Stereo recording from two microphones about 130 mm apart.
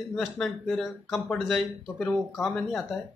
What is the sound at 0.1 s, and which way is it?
Speech, 5° left (ahead or behind).